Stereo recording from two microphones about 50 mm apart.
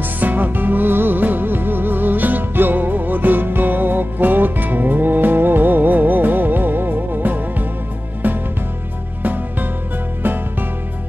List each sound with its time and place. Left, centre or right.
0.2 s music: right
9.2 s music: right